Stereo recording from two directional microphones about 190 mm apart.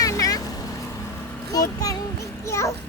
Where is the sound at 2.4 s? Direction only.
15° left (ahead or behind).